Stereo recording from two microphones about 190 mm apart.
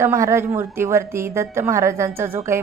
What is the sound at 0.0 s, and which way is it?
A woman's voice, 15° right (ahead or behind).